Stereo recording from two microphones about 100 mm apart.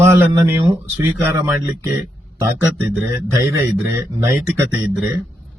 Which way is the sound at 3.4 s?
25° right (ahead or behind).